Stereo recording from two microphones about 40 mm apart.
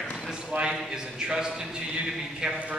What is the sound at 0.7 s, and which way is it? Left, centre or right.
A man's voice, centre.